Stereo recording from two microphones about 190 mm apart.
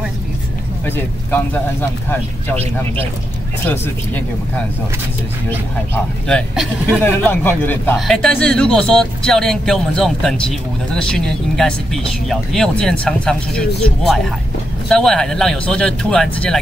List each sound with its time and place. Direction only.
0.8 s speech: 10° left (ahead or behind)
2.5 s speech: 35° right (ahead or behind)
3.6 s speech: 10° left (ahead or behind)
6.2 s speech: centre (ahead or behind)
7.0 s speech: 10° left (ahead or behind)